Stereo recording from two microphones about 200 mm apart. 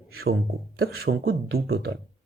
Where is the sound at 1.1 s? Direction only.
60° right (ahead or behind).